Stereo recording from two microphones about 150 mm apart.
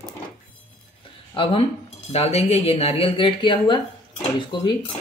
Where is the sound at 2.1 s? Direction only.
45° left (ahead or behind).